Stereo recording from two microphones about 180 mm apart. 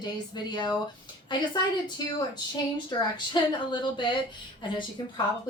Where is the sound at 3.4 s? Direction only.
25° left (ahead or behind).